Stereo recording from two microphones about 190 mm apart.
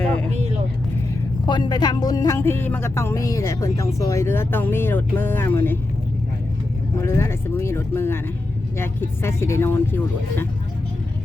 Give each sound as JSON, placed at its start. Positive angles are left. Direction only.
{"t": 0.0, "sound": "vehicle", "side_deg": 5}
{"t": 1.5, "sound": "speech", "side_deg": 25}
{"t": 7.0, "sound": "speech", "side_deg": 15}